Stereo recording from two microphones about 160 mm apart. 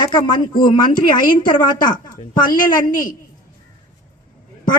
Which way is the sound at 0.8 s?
60° left (ahead or behind).